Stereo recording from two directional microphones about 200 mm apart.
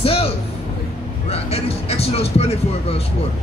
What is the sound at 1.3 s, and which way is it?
A man's voice, 30° left (ahead or behind).